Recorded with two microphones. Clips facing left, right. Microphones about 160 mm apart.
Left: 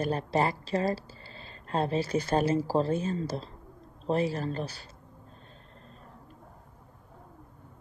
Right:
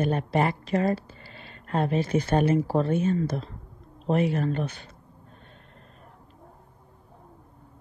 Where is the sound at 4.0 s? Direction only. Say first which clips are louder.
Right 4 dB; 30° left (ahead or behind).